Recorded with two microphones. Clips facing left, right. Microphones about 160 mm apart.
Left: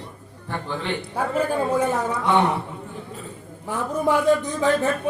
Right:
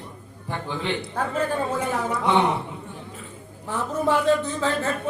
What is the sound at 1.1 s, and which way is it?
Speech, 10° left (ahead or behind).